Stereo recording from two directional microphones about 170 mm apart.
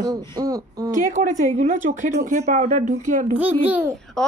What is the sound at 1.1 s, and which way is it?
Speech, 45° right (ahead or behind).